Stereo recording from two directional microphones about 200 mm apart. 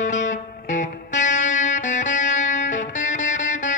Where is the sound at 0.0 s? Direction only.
40° left (ahead or behind).